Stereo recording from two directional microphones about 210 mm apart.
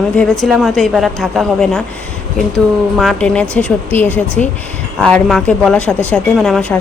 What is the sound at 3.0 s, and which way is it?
Speech, centre (ahead or behind).